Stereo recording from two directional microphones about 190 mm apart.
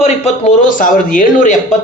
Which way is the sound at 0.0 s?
35° left (ahead or behind).